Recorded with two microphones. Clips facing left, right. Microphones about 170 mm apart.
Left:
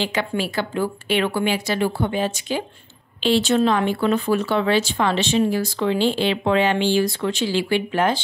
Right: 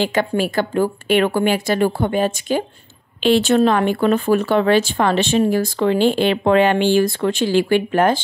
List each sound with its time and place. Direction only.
0.0 s speech: 45° right (ahead or behind)